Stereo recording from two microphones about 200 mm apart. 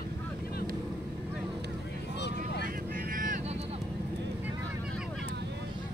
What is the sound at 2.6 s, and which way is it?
Vehicle, 45° right (ahead or behind).